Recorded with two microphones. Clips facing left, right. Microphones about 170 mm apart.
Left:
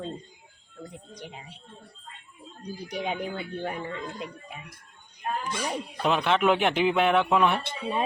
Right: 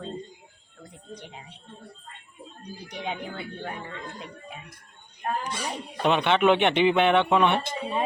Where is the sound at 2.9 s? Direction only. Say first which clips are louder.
Left 2 dB; 10° left (ahead or behind).